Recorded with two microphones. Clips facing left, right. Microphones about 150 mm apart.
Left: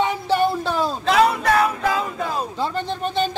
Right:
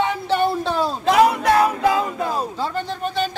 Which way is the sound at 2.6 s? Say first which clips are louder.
Left 1 dB; 25° left (ahead or behind).